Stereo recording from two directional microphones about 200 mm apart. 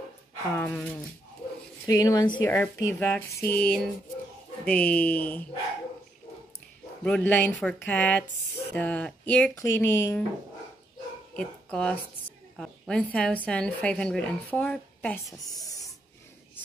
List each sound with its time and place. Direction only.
0.6 s speech: 5° left (ahead or behind)
1.9 s speech: 20° left (ahead or behind)
2.4 s speech: 10° left (ahead or behind)
7.1 s speech: 5° left (ahead or behind)
11.3 s a woman's voice: 5° left (ahead or behind)